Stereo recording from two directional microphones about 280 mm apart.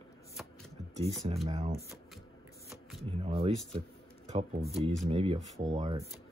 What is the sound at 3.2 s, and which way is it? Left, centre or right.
Speech, right.